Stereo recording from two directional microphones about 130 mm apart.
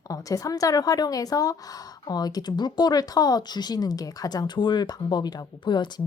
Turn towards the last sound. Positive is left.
turn(degrees=35)  # may be behind; listen again after turning